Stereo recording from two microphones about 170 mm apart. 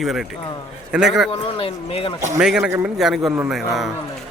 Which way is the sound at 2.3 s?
5° right (ahead or behind).